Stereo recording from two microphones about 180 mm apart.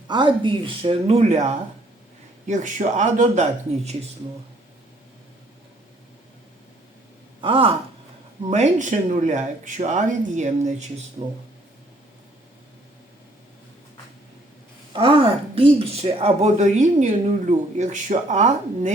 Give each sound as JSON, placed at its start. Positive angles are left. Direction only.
{"t": 0.1, "sound": "speech", "side_deg": -25}
{"t": 7.4, "sound": "gasp", "side_deg": -30}
{"t": 8.4, "sound": "speech", "side_deg": -40}
{"t": 14.9, "sound": "speech", "side_deg": -30}